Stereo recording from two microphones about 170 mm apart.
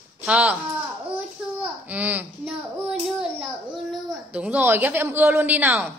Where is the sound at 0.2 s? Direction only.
5° right (ahead or behind).